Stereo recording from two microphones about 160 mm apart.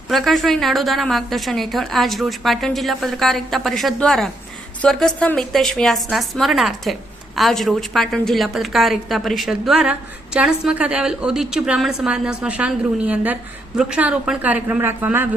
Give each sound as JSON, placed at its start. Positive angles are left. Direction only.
{"t": 0.1, "sound": "a woman's voice", "side_deg": 0}